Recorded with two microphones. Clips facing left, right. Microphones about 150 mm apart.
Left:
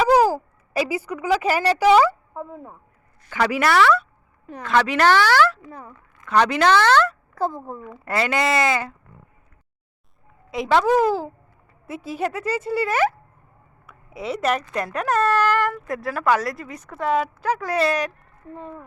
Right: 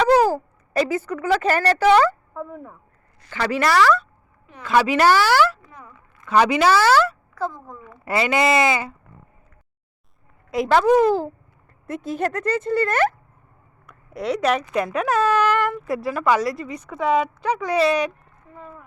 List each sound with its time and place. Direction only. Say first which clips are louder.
0.0 s speech: even; 10° left (ahead or behind)
3.4 s speech: even; 5° left (ahead or behind)
7.3 s speech: left 5 dB; 30° left (ahead or behind)
8.0 s speech: right 2 dB; 5° right (ahead or behind)
10.5 s speech: right 2 dB; centre (ahead or behind)
13.8 s a sound: right 4 dB; 5° left (ahead or behind)
14.6 s speech: right 3 dB; 10° right (ahead or behind)
18.5 s speech: left 5 dB; 30° left (ahead or behind)